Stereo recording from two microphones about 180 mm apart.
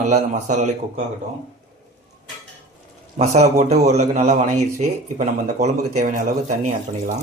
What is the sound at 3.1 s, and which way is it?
A man's voice, 40° right (ahead or behind).